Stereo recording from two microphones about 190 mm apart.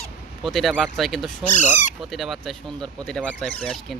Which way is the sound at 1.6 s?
40° left (ahead or behind).